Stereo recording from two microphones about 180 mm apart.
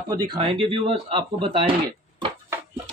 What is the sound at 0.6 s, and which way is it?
Speech, 30° right (ahead or behind).